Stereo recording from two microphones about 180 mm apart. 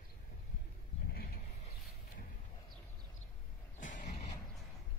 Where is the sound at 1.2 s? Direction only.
55° left (ahead or behind).